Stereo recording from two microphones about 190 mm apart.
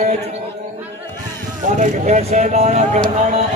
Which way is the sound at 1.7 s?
40° right (ahead or behind).